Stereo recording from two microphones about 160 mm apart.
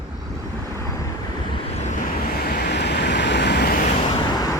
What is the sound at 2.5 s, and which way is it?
Vehicle, 90° left.